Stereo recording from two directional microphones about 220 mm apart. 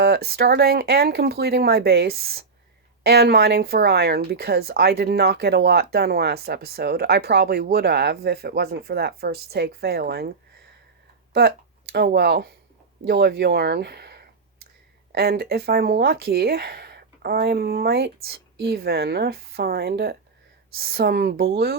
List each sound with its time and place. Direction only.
0.0 s speech: 45° right (ahead or behind)
11.3 s speech: 45° right (ahead or behind)